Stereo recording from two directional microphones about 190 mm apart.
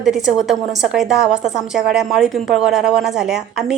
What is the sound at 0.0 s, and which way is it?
A woman's voice, centre (ahead or behind).